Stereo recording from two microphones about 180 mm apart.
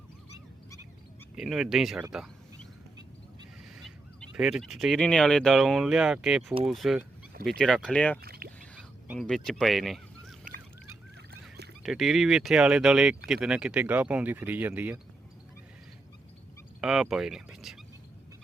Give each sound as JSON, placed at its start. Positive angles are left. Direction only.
{"t": 1.4, "sound": "speech", "side_deg": -5}
{"t": 2.1, "sound": "a sound", "side_deg": 0}
{"t": 3.8, "sound": "speech", "side_deg": 0}
{"t": 8.2, "sound": "a sound", "side_deg": -60}
{"t": 9.0, "sound": "speech", "side_deg": 0}
{"t": 11.3, "sound": "goose", "side_deg": -65}
{"t": 11.8, "sound": "speech", "side_deg": 0}
{"t": 16.8, "sound": "speech", "side_deg": -5}